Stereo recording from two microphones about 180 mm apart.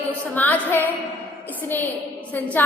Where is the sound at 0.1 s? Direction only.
10° left (ahead or behind).